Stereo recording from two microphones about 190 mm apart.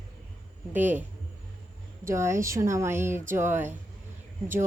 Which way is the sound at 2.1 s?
15° right (ahead or behind).